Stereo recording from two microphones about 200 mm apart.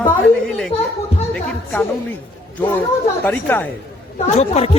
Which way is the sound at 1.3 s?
5° left (ahead or behind).